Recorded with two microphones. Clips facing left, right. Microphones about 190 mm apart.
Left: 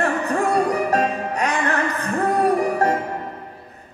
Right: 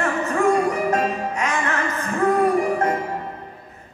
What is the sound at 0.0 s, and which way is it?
Music, 35° left (ahead or behind).